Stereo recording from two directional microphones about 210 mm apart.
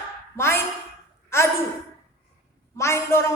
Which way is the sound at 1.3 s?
10° left (ahead or behind).